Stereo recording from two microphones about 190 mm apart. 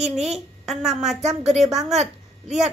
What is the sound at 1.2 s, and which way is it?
Speech, 35° right (ahead or behind).